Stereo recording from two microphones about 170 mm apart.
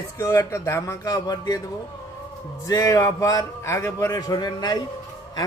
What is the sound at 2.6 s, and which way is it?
A man's voice, 20° left (ahead or behind).